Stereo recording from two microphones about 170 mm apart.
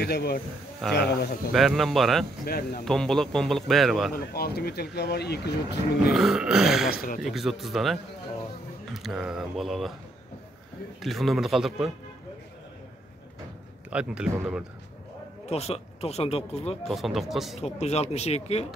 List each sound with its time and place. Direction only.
0.0 s speech: 70° left (ahead or behind)
1.5 s a man's voice: centre (ahead or behind)
2.4 s speech: 65° left (ahead or behind)
2.8 s a man's voice: 5° left (ahead or behind)
4.1 s speech: 65° left (ahead or behind)
6.1 s a man's voice: centre (ahead or behind)
11.0 s a man's voice: centre (ahead or behind)
13.8 s a man's voice: 5° right (ahead or behind)
15.4 s speech: 35° left (ahead or behind)
16.8 s a man's voice: centre (ahead or behind)
17.6 s speech: 40° left (ahead or behind)